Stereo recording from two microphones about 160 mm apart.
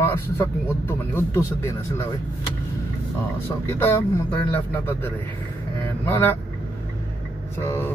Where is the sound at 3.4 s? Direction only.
15° left (ahead or behind).